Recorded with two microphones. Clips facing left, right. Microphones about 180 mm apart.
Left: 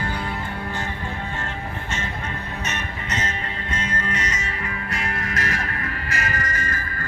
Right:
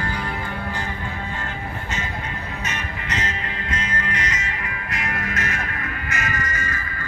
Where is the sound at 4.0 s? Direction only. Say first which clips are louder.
Even; 30° left (ahead or behind).